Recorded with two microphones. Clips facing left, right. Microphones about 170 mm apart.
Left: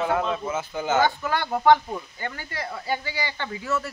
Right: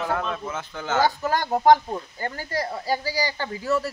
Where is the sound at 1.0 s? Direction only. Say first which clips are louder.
Right 1 dB; 40° right (ahead or behind).